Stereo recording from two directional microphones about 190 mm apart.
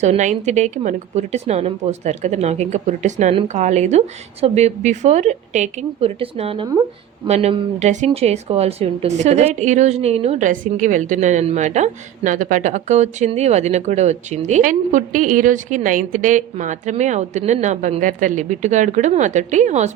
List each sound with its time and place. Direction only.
0.0 s speech: 40° right (ahead or behind)